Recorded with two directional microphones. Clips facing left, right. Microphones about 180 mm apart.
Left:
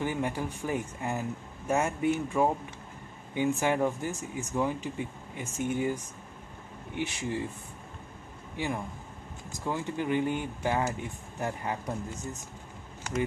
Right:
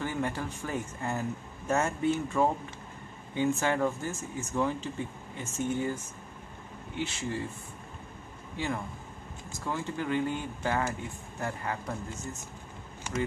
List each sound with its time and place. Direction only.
0.0 s speech: 15° left (ahead or behind)
7.0 s speech: 15° left (ahead or behind)
8.5 s speech: 15° left (ahead or behind)